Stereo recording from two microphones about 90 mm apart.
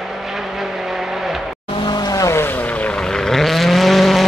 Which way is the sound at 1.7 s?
65° left (ahead or behind).